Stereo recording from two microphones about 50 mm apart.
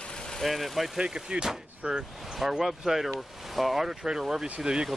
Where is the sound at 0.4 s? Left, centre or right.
Centre.